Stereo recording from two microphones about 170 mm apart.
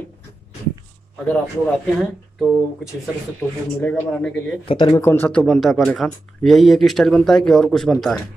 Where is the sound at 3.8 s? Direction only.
5° left (ahead or behind).